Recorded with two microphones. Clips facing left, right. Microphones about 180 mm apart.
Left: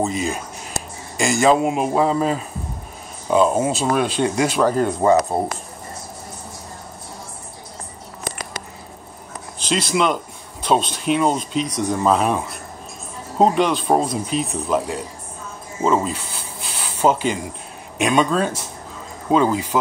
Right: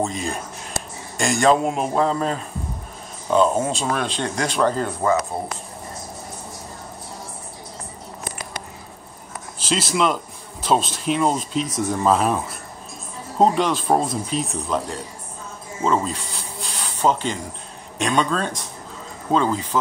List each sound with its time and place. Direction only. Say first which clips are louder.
0.0 s speech: left 3 dB; 5° left (ahead or behind)
5.3 s speech: left 6 dB; 40° left (ahead or behind)
9.6 s speech: left 1 dB; 5° right (ahead or behind)
13.4 s speech: left 1 dB; centre (ahead or behind)